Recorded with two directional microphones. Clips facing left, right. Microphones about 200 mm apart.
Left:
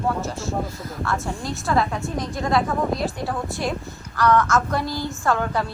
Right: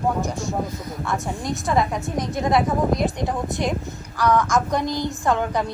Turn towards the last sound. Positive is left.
turn(degrees=-15)  # may be behind; listen again after turning